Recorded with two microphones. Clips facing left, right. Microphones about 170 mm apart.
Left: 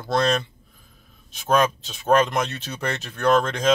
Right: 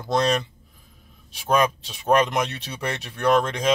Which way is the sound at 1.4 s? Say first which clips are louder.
Left 1 dB; 10° right (ahead or behind).